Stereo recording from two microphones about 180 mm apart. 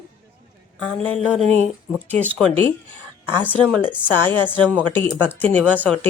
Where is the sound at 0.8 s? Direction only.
10° left (ahead or behind).